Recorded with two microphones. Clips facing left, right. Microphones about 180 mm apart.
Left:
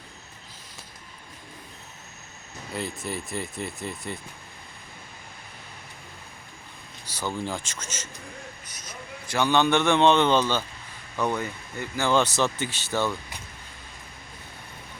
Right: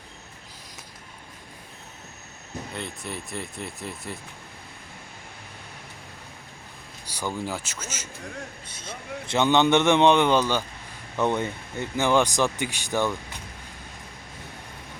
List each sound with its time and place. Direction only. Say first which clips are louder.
2.7 s speech: left 5 dB; centre (ahead or behind)
7.0 s speech: even; 10° right (ahead or behind)
8.6 s a man's voice: right 4 dB; 30° right (ahead or behind); by 10.7 s 10° right (ahead or behind)
11.2 s speech: right 3 dB; 20° right (ahead or behind)